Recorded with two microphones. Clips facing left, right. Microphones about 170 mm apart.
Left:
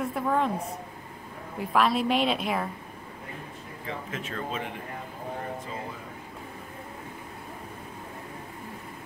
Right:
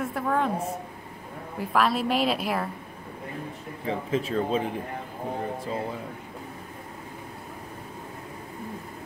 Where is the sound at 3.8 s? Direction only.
35° right (ahead or behind).